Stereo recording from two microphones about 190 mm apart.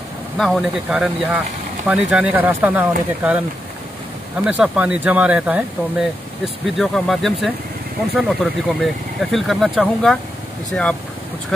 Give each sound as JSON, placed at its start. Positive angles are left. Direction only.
{"t": 0.4, "sound": "speech", "side_deg": 0}
{"t": 4.5, "sound": "speech", "side_deg": -10}